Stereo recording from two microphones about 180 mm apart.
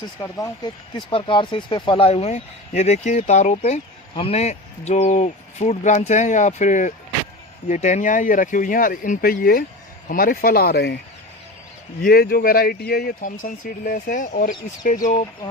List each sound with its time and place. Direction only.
0.2 s speech: 15° left (ahead or behind); by 10.9 s 60° left (ahead or behind)
12.0 s speech: 55° left (ahead or behind)